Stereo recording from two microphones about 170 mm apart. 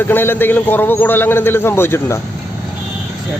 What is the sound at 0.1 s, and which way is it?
A man's voice, 10° left (ahead or behind).